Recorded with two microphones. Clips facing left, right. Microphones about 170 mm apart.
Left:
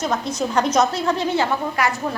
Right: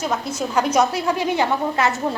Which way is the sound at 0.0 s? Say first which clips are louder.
Left 1 dB; 5° right (ahead or behind).